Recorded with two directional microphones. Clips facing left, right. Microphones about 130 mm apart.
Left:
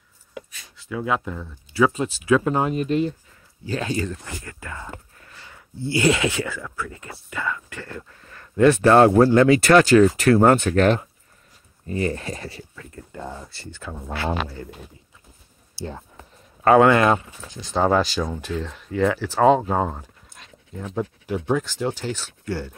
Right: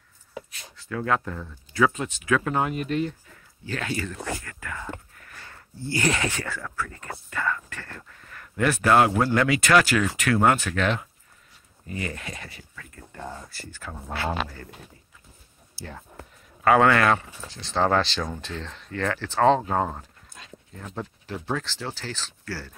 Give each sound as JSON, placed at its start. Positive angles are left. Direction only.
{"t": 0.8, "sound": "speech", "side_deg": 10}
{"t": 1.9, "sound": "speech", "side_deg": 30}
{"t": 5.1, "sound": "sniff", "side_deg": 25}
{"t": 5.5, "sound": "speech", "side_deg": 20}
{"t": 13.1, "sound": "speech", "side_deg": 10}
{"t": 13.5, "sound": "speech", "side_deg": 25}
{"t": 16.6, "sound": "speech", "side_deg": 20}